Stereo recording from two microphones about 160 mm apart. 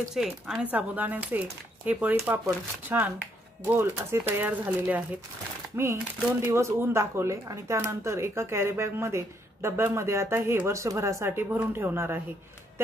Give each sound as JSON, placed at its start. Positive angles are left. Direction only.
{"t": 0.0, "sound": "speech", "side_deg": 0}
{"t": 6.4, "sound": "speech", "side_deg": -15}